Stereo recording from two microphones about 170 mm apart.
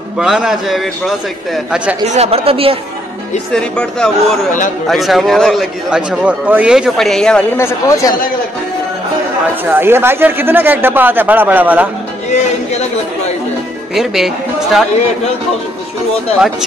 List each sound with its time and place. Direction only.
0.2 s a man's voice: 5° right (ahead or behind)
2.0 s speech: 35° right (ahead or behind)
3.5 s a man's voice: 5° left (ahead or behind)
7.5 s speech: 15° left (ahead or behind)
9.7 s a man's voice: 15° right (ahead or behind)
13.9 s a man's voice: centre (ahead or behind)